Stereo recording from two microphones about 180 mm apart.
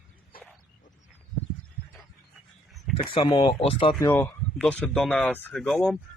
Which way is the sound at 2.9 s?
30° left (ahead or behind).